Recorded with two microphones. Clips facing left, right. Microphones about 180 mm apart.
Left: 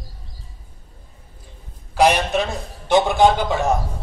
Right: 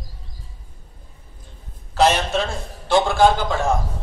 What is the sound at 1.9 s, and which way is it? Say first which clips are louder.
A man's voice: left 1 dB; 10° left (ahead or behind).